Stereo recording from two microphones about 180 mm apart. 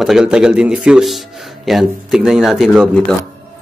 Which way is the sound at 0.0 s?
5° right (ahead or behind).